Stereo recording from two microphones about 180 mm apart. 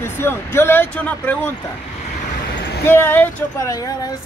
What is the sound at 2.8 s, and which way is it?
Speech, 10° left (ahead or behind).